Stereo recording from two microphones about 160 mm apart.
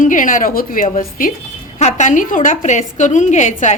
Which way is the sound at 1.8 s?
45° left (ahead or behind).